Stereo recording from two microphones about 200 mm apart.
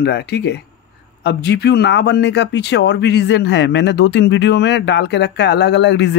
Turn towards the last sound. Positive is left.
turn(degrees=60)  # may be behind; listen again after turning